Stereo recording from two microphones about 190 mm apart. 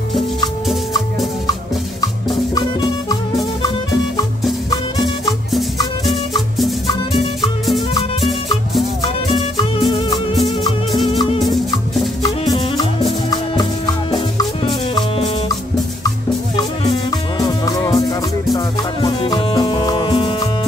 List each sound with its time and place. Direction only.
2.5 s music: 20° left (ahead or behind)
5.5 s music: centre (ahead or behind)
10.3 s music: centre (ahead or behind)
11.1 s music: 30° left (ahead or behind)
12.2 s music: 20° left (ahead or behind)
17.5 s music: 20° left (ahead or behind)